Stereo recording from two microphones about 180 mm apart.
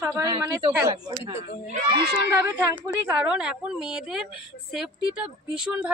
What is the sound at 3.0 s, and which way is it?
A woman's voice, 5° right (ahead or behind).